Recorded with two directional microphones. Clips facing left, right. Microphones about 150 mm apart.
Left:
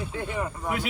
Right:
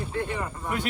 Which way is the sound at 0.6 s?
5° left (ahead or behind).